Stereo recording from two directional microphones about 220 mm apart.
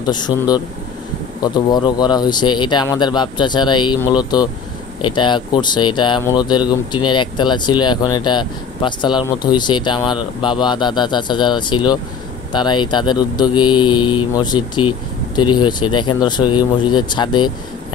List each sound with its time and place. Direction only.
0.0 s speech: 20° left (ahead or behind)